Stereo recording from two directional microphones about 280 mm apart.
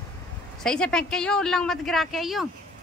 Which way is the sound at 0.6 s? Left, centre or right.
Centre.